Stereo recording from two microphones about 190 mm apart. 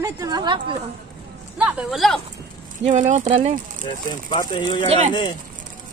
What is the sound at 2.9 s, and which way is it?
Speech, 40° right (ahead or behind).